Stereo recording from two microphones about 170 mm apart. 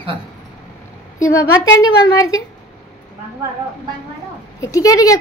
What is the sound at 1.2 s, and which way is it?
A woman's voice, 20° left (ahead or behind).